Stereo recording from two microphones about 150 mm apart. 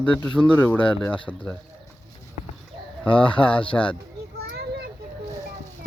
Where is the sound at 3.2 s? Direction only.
35° left (ahead or behind).